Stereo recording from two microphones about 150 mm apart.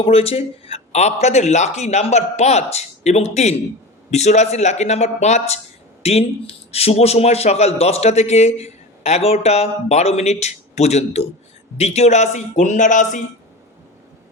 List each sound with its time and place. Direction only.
0.0 s a man's voice: 40° left (ahead or behind)